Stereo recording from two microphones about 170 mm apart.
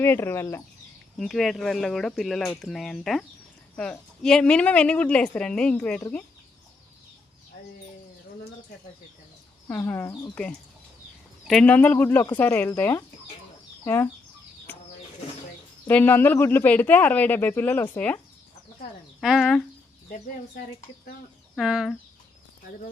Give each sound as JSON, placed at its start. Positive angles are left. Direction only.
{"t": 0.0, "sound": "speech", "side_deg": 15}
{"t": 1.2, "sound": "a woman's voice", "side_deg": 0}
{"t": 9.6, "sound": "speech", "side_deg": 15}
{"t": 11.4, "sound": "speech", "side_deg": 5}
{"t": 15.9, "sound": "speech", "side_deg": 10}
{"t": 19.2, "sound": "a woman's voice", "side_deg": 0}
{"t": 20.1, "sound": "speech", "side_deg": 55}
{"t": 21.5, "sound": "speech", "side_deg": 0}